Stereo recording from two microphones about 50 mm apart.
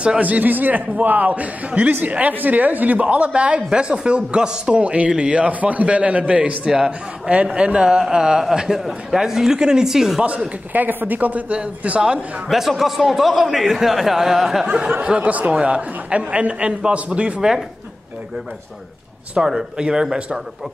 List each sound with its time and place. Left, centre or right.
0.2 s a man's voice: right; by 10.2 s centre
10.2 s a man's voice: right
12.4 s speech: centre
15.0 s a man's voice: right
17.4 s a man's voice: centre
19.3 s a man's voice: centre